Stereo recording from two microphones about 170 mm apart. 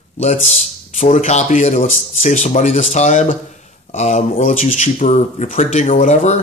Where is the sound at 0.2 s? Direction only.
40° left (ahead or behind).